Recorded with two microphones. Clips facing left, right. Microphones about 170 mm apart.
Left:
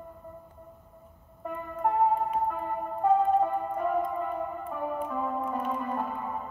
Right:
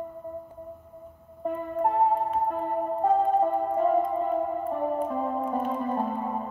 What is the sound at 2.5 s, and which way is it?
Music, 35° right (ahead or behind).